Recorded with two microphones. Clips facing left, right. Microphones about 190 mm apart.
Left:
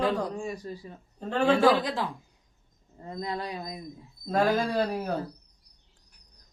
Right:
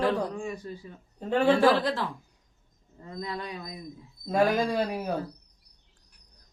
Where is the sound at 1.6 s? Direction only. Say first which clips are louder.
Even; 15° left (ahead or behind).